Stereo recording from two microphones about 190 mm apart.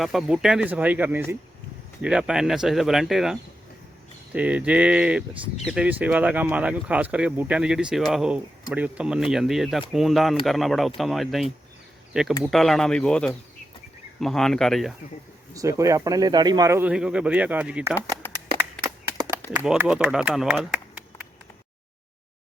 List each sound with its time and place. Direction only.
0.0 s speech: centre (ahead or behind)
15.5 s speech: 15° right (ahead or behind)
18.8 s a sound: 20° right (ahead or behind)
19.5 s speech: 5° right (ahead or behind)